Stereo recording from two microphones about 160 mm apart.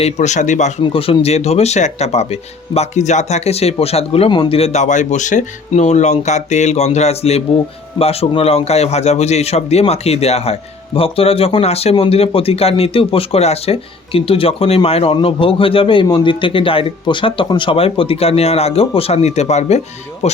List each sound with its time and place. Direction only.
0.0 s speech: 45° left (ahead or behind)
0.9 s a man's voice: 35° left (ahead or behind)